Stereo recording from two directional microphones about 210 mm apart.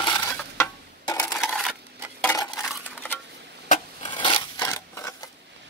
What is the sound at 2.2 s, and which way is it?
Dishes, 15° left (ahead or behind).